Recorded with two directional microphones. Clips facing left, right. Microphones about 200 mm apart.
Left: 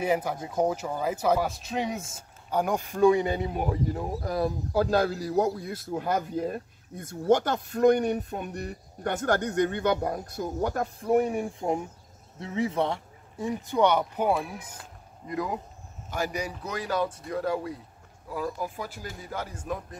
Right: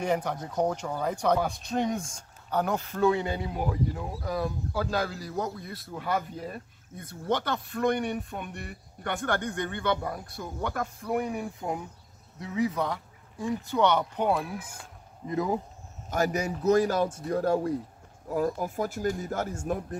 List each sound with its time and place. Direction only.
0.0 s speech: 5° left (ahead or behind)
3.9 s a man's voice: 40° left (ahead or behind); by 14.7 s 10° left (ahead or behind)
15.2 s speech: 25° right (ahead or behind)
16.1 s speech: 45° right (ahead or behind)